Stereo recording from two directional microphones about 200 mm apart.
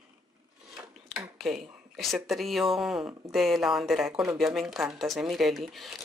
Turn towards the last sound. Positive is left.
turn(degrees=0)  # may be behind; listen again after turning